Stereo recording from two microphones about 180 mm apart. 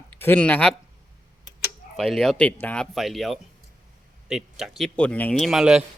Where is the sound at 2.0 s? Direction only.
Centre (ahead or behind).